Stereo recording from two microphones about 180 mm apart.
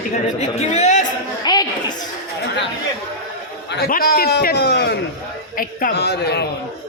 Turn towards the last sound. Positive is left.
turn(degrees=65)  # may be behind; listen again after turning